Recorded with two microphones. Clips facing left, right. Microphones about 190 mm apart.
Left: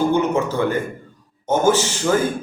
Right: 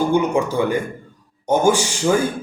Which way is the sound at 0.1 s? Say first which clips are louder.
Right 1 dB; 10° right (ahead or behind).